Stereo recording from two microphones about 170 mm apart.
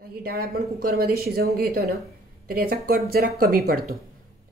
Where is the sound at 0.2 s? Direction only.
60° right (ahead or behind).